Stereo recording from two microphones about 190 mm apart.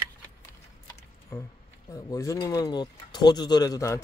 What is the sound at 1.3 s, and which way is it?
Speech, 15° left (ahead or behind).